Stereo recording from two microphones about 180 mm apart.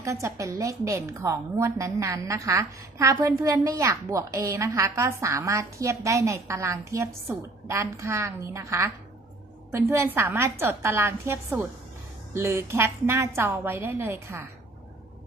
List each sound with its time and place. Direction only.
0.0 s a woman's voice: 15° right (ahead or behind)